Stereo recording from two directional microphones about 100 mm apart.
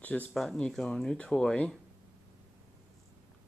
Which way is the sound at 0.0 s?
15° left (ahead or behind).